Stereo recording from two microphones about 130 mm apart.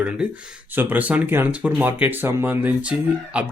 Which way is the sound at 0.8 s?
10° right (ahead or behind).